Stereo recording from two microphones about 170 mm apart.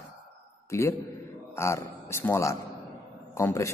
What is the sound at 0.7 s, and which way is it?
A man's voice, 15° left (ahead or behind).